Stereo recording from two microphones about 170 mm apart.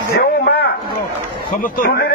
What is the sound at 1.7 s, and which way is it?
Speech, 55° left (ahead or behind).